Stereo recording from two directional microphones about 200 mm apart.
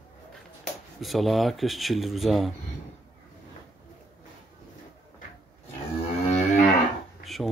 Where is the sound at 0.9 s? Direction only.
Centre (ahead or behind).